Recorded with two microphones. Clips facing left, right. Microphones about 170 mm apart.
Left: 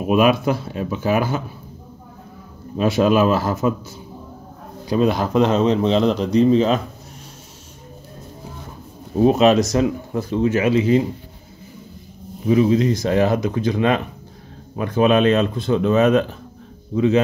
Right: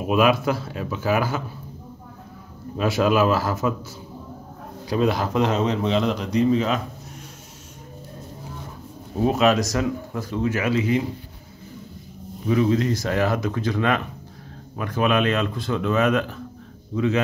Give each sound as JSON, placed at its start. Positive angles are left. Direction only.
{"t": 0.1, "sound": "speech", "side_deg": 20}
{"t": 2.8, "sound": "speech", "side_deg": 25}
{"t": 4.8, "sound": "speech", "side_deg": 20}
{"t": 9.2, "sound": "speech", "side_deg": 20}
{"t": 12.4, "sound": "speech", "side_deg": 20}